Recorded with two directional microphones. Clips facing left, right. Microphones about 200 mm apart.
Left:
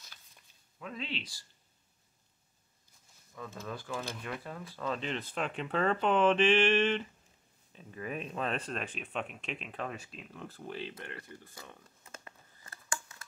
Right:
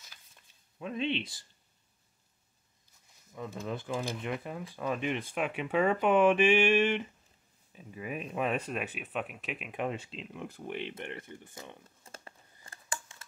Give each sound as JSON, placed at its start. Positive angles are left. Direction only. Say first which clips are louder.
{"t": 0.7, "sound": "speech", "louder": "right 8 dB", "side_deg": -25}
{"t": 3.3, "sound": "speech", "louder": "right 4 dB", "side_deg": -20}
{"t": 9.8, "sound": "speech", "louder": "right 5 dB", "side_deg": -25}